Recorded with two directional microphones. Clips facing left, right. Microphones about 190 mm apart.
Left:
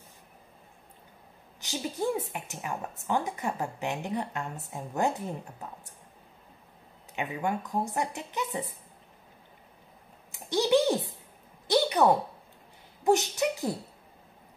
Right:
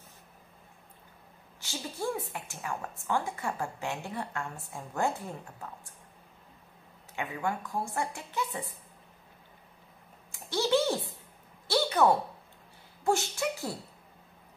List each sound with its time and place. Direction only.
1.6 s speech: 20° left (ahead or behind)
7.2 s speech: 20° left (ahead or behind)
10.3 s a sound: 15° left (ahead or behind)
13.0 s speech: 20° left (ahead or behind)